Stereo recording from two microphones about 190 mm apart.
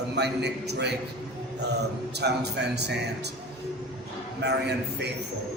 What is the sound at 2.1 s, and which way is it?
Speech, 60° right (ahead or behind).